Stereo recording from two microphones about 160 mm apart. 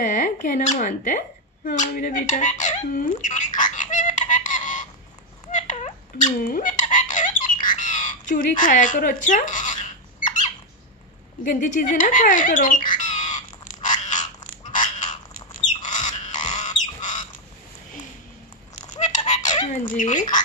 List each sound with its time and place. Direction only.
0.0 s speech: 50° left (ahead or behind)
5.5 s fowl: 50° left (ahead or behind)
11.4 s squawk: 50° left (ahead or behind)
14.7 s frog: 55° left (ahead or behind)
16.5 s bird: 50° left (ahead or behind)
18.9 s fowl: 50° left (ahead or behind)
19.9 s speech: 50° left (ahead or behind)